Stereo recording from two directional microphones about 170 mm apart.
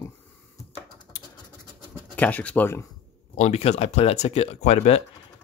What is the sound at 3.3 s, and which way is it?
Speech, 40° left (ahead or behind).